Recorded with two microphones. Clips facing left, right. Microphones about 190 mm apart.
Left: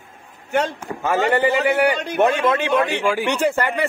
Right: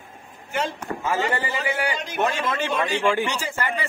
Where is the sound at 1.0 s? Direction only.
65° left (ahead or behind).